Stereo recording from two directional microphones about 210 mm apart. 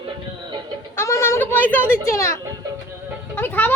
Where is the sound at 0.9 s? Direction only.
15° left (ahead or behind).